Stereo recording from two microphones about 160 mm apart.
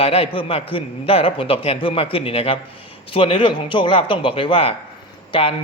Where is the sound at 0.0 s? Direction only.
35° left (ahead or behind).